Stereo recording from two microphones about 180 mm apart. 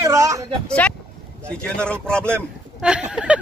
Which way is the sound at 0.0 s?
15° right (ahead or behind).